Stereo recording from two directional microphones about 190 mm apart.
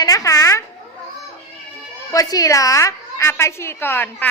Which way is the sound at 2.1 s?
20° left (ahead or behind).